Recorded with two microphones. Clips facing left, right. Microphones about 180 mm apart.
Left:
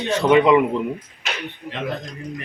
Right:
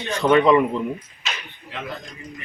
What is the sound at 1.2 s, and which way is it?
Speech, 70° left (ahead or behind).